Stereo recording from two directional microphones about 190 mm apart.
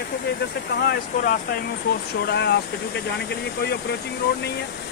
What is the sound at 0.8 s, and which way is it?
Speech, 50° left (ahead or behind).